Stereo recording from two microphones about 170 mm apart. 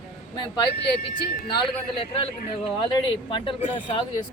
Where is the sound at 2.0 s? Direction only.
35° left (ahead or behind).